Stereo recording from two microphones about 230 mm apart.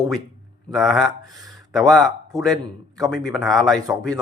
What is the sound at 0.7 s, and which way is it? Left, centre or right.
Speech, centre.